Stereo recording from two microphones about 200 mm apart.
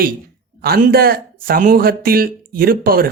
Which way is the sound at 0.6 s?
50° right (ahead or behind).